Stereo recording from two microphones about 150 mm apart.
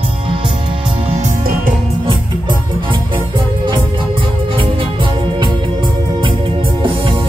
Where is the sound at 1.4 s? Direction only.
70° right (ahead or behind).